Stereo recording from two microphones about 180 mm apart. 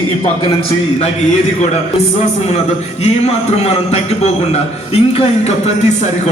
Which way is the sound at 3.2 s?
35° left (ahead or behind).